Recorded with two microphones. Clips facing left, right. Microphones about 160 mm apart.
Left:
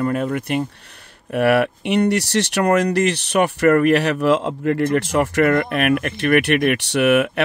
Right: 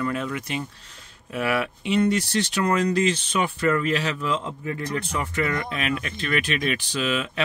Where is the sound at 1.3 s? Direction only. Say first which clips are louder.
Left 9 dB; 65° left (ahead or behind).